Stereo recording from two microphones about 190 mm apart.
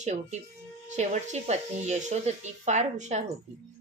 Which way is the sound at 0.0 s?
40° right (ahead or behind).